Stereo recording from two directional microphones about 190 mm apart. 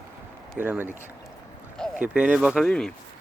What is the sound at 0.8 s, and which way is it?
Speech, 10° left (ahead or behind).